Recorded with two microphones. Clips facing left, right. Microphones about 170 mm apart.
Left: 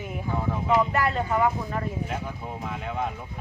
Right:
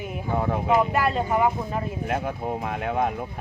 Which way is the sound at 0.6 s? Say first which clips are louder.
Right 1 dB; 15° right (ahead or behind).